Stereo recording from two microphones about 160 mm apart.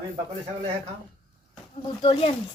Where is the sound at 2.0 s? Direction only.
35° left (ahead or behind).